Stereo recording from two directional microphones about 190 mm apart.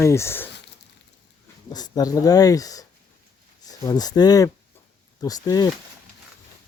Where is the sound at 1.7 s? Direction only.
20° left (ahead or behind).